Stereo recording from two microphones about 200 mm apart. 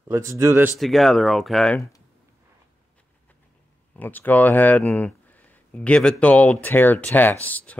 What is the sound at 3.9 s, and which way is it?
Speech, 10° left (ahead or behind).